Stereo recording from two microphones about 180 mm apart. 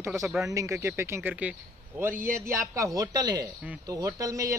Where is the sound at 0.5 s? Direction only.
15° right (ahead or behind).